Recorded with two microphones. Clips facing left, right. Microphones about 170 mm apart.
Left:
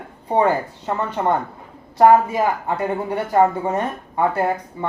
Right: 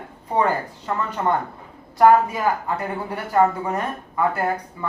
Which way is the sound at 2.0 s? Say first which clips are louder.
Left 2 dB; 25° left (ahead or behind).